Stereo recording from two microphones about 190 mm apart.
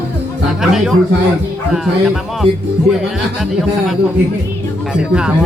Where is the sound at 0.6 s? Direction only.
Centre (ahead or behind).